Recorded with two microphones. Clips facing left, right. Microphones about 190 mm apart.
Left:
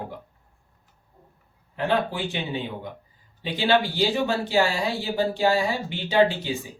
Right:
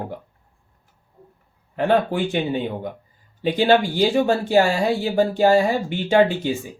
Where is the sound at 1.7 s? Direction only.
50° right (ahead or behind).